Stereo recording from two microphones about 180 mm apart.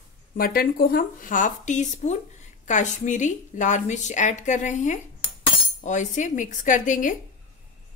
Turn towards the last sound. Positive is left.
turn(degrees=45)  # may be behind; listen again after turning